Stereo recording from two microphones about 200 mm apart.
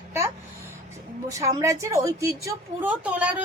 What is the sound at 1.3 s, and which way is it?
A woman's voice, 15° right (ahead or behind).